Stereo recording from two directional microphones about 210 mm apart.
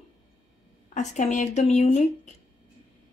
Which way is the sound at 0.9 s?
35° left (ahead or behind).